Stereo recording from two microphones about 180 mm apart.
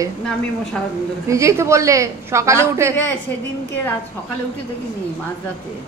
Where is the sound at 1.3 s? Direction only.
15° right (ahead or behind).